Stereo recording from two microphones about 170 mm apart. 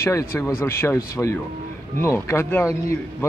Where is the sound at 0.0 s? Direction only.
15° left (ahead or behind).